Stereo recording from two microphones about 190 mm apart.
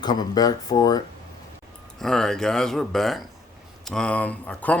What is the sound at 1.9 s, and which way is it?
Speech, centre (ahead or behind).